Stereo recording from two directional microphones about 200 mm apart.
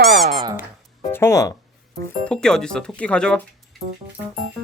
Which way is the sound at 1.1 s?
15° left (ahead or behind).